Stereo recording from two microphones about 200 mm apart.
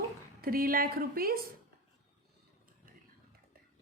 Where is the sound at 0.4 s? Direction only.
45° right (ahead or behind).